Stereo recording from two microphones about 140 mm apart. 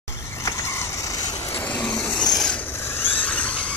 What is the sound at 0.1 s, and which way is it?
Vehicle, 20° left (ahead or behind).